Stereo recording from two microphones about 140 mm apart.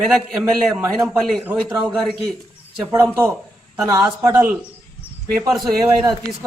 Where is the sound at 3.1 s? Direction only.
15° right (ahead or behind).